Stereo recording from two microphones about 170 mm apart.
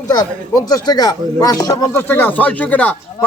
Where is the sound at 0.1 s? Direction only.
20° left (ahead or behind).